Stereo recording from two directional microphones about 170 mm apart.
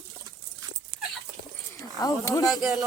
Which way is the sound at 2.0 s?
20° left (ahead or behind).